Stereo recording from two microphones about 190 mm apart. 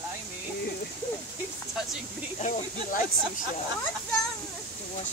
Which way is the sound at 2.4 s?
45° left (ahead or behind).